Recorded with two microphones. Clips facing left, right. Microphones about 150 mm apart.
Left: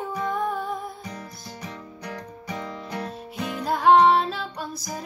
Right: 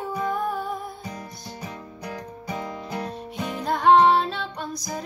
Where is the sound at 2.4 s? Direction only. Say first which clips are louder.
Right 2 dB; 15° right (ahead or behind).